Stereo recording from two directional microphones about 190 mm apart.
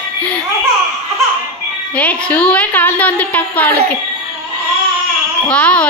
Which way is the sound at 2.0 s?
5° left (ahead or behind).